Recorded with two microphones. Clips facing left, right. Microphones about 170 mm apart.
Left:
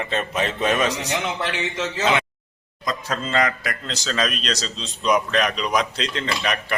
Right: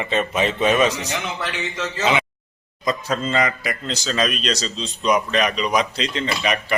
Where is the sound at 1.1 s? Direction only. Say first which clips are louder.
Left 2 dB; 20° left (ahead or behind).